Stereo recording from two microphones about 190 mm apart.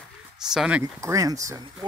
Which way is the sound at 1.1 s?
15° right (ahead or behind).